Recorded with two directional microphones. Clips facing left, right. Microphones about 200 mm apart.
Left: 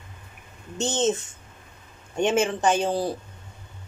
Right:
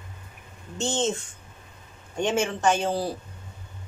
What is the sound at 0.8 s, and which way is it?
Speech, 20° left (ahead or behind).